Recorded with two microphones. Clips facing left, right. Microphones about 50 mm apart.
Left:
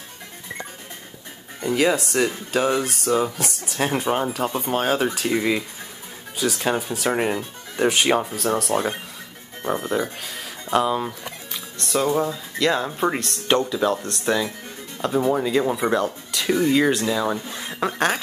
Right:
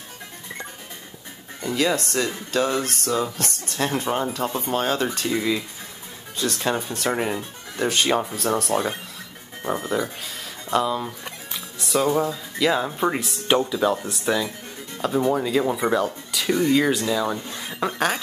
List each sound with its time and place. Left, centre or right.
1.6 s speech: centre
5.3 s speech: left
6.3 s speech: centre
8.2 s speech: centre
11.5 s speech: centre